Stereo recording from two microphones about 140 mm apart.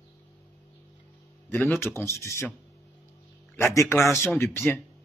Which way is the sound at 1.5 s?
15° left (ahead or behind).